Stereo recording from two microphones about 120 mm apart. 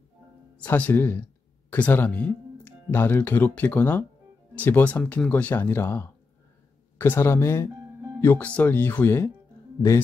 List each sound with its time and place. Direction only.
0.6 s speech: 10° left (ahead or behind)